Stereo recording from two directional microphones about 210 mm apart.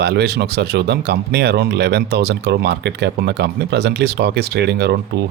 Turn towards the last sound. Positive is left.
turn(degrees=-50)  # may be behind; listen again after turning